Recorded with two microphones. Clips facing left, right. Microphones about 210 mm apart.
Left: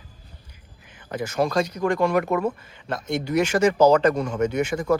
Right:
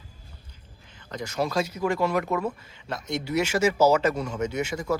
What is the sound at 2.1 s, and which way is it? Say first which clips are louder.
Speech: left 4 dB; 50° left (ahead or behind).